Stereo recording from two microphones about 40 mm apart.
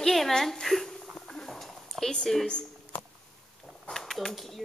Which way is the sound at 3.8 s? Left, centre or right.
Centre.